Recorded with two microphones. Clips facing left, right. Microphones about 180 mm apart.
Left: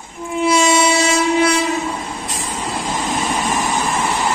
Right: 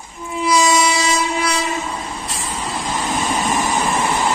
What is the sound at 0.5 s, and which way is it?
Train, 25° left (ahead or behind).